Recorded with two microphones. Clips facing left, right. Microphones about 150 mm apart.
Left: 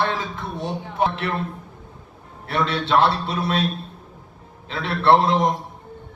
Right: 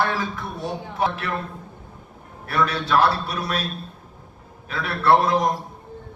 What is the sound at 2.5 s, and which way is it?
A man's voice, 25° left (ahead or behind).